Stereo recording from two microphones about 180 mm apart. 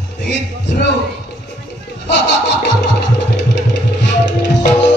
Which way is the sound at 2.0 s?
75° left (ahead or behind).